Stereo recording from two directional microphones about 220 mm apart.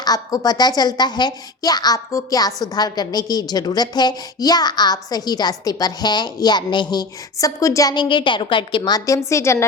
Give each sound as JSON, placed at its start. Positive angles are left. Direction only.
{"t": 0.0, "sound": "a woman's voice", "side_deg": 15}